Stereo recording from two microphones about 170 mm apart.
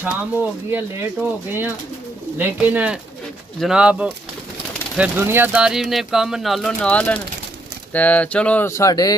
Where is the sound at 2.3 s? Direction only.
10° right (ahead or behind).